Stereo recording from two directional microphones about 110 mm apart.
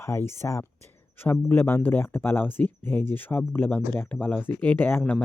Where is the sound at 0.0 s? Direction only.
25° left (ahead or behind).